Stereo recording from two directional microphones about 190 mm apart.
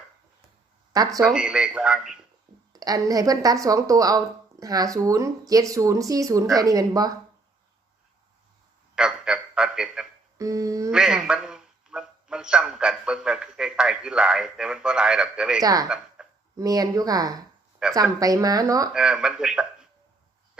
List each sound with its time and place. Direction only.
0.9 s speech: 20° right (ahead or behind)
1.3 s speech: 5° right (ahead or behind)
2.7 s speech: 20° right (ahead or behind)
9.0 s a sound: 5° right (ahead or behind)
10.3 s speech: 15° right (ahead or behind)
10.9 s a man's voice: 5° right (ahead or behind)
15.6 s speech: 20° right (ahead or behind)
16.2 s a sound: 5° right (ahead or behind)
16.6 s speech: 20° right (ahead or behind)
18.9 s speech: 5° right (ahead or behind)